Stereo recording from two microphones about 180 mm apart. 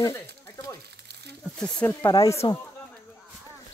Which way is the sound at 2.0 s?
20° left (ahead or behind).